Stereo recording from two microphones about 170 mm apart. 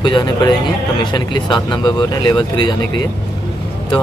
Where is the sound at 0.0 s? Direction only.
30° left (ahead or behind).